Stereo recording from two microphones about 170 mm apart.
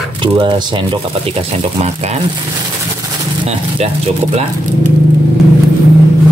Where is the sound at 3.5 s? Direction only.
35° right (ahead or behind).